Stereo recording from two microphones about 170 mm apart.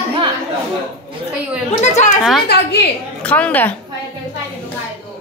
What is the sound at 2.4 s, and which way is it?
Speech, 75° left (ahead or behind).